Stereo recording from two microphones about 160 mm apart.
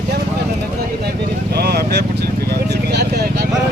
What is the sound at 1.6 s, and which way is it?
Speech, 85° right.